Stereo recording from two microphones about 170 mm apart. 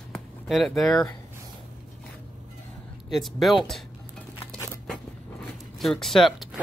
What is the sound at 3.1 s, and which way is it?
Speech, centre (ahead or behind).